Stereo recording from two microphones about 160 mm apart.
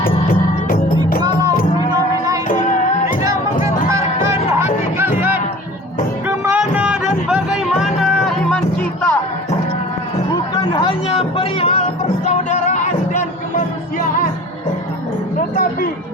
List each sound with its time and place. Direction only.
0.0 s music: 65° left (ahead or behind)
1.2 s music: 25° right (ahead or behind)
1.9 s a sound: 20° right (ahead or behind)
2.5 s music: 55° left (ahead or behind)
4.6 s music: 15° right (ahead or behind); by 9.1 s 5° left (ahead or behind)
10.3 s music: 25° left (ahead or behind)
12.2 s music: 50° left (ahead or behind)
15.4 s a sound: 65° left (ahead or behind)